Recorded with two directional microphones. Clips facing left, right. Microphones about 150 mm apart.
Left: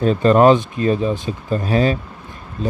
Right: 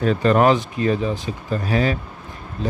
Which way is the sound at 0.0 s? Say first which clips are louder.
Left 4 dB; 25° left (ahead or behind).